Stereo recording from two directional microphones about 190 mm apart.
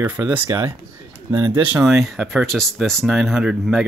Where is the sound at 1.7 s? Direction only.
Centre (ahead or behind).